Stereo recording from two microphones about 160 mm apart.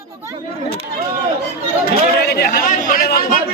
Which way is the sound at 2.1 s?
85° left.